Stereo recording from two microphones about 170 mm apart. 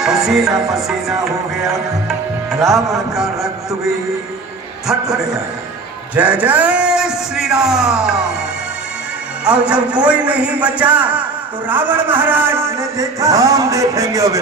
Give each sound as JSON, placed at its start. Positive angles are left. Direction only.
{"t": 0.0, "sound": "music", "side_deg": 0}
{"t": 1.6, "sound": "a man's voice", "side_deg": 0}
{"t": 4.8, "sound": "a man's voice", "side_deg": 0}
{"t": 9.4, "sound": "a man's voice", "side_deg": -5}